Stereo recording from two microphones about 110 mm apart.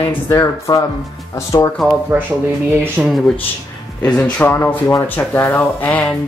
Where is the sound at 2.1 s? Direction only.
15° right (ahead or behind).